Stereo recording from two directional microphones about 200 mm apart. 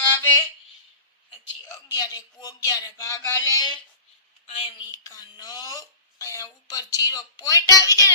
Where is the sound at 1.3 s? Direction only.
20° left (ahead or behind).